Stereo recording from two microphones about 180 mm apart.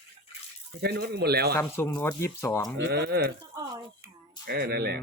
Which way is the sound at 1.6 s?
15° left (ahead or behind).